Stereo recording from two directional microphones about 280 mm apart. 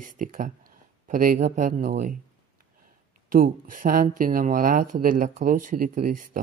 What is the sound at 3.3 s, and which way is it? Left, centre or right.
Speech, right.